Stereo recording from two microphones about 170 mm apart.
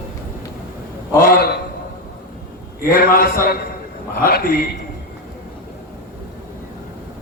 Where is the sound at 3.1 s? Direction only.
60° left (ahead or behind).